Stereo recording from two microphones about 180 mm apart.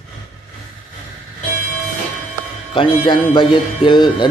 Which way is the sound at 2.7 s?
25° left (ahead or behind).